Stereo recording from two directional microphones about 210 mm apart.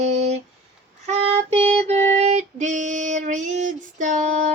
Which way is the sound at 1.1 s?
25° right (ahead or behind).